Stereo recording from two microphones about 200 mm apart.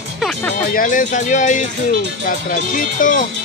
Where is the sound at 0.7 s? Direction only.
40° left (ahead or behind).